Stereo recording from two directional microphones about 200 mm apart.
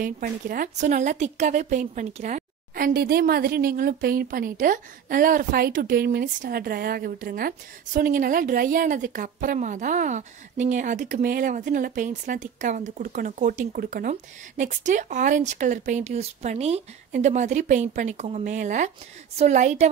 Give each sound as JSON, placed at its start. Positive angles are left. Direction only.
{"t": 0.0, "sound": "a woman's voice", "side_deg": -45}